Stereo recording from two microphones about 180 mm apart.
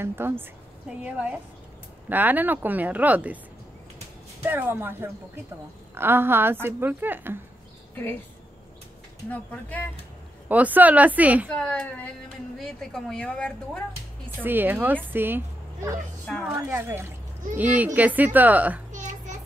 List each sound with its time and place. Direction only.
0.0 s a woman's voice: 15° right (ahead or behind)
4.4 s a woman's voice: 10° right (ahead or behind)
7.9 s speech: 10° left (ahead or behind)
9.3 s speech: 10° left (ahead or behind)
10.5 s a woman's voice: 10° right (ahead or behind)
11.5 s speech: 5° left (ahead or behind)
14.4 s a woman's voice: 10° right (ahead or behind)
16.3 s speech: 5° left (ahead or behind)
16.6 s a woman's voice: 15° right (ahead or behind)
18.9 s a sound: 45° right (ahead or behind)